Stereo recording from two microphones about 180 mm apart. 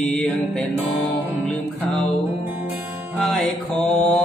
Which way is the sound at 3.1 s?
Centre (ahead or behind).